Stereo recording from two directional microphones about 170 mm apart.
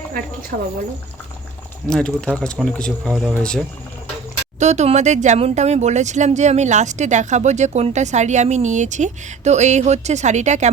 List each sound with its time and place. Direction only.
1.9 s speech: 5° left (ahead or behind)
4.6 s speech: 40° right (ahead or behind)